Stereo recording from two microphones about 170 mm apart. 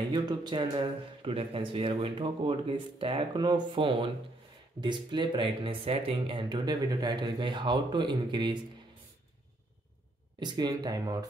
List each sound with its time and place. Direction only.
0.1 s speech: 25° right (ahead or behind)
10.4 s speech: 25° right (ahead or behind)